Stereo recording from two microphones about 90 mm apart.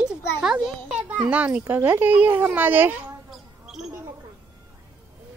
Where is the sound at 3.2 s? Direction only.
5° right (ahead or behind).